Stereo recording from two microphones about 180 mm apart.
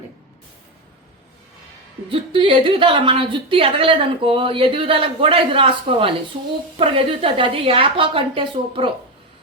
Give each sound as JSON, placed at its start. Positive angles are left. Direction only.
{"t": 2.0, "sound": "a woman's voice", "side_deg": -30}